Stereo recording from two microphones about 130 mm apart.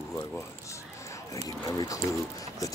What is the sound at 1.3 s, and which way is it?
Speech, 30° left (ahead or behind).